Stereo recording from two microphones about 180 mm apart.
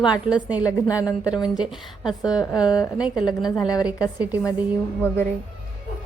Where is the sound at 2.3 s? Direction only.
20° left (ahead or behind).